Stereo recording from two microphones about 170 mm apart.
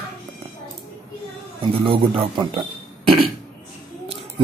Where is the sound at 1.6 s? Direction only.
30° right (ahead or behind).